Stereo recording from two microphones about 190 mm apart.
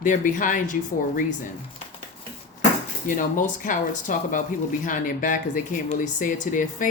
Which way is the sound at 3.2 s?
45° left (ahead or behind).